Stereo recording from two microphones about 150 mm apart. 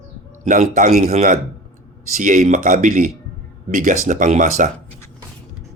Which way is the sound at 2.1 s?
60° right (ahead or behind).